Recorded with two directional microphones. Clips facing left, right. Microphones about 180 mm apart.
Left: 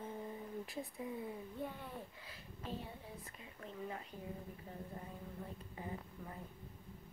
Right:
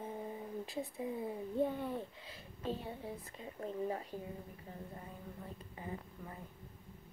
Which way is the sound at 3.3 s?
35° right (ahead or behind).